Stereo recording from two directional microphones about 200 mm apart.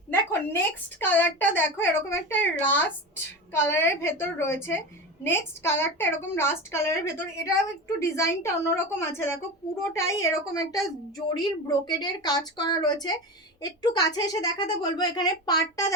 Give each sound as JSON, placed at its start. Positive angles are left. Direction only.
{"t": 0.1, "sound": "a woman's voice", "side_deg": 10}